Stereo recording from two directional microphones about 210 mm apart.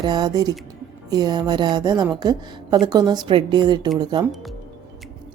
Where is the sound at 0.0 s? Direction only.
20° right (ahead or behind).